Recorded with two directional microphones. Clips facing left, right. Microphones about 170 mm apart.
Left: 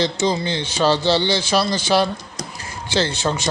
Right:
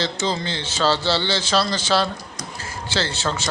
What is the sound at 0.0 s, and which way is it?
Speech, 15° left (ahead or behind).